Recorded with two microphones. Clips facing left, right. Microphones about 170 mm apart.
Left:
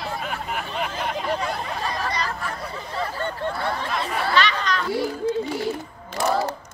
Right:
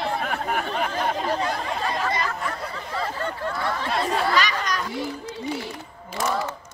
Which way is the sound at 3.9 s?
40° right (ahead or behind).